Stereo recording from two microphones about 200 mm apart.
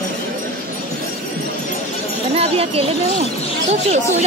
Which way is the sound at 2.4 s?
30° right (ahead or behind).